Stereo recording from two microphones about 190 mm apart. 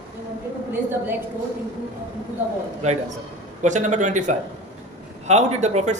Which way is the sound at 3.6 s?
40° right (ahead or behind).